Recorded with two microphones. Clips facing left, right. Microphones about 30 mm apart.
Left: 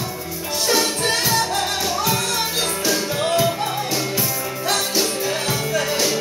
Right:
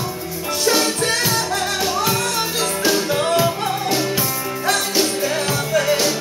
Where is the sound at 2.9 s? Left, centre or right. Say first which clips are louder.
Right 4 dB; centre.